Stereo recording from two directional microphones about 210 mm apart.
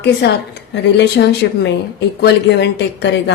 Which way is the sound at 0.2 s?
55° left (ahead or behind).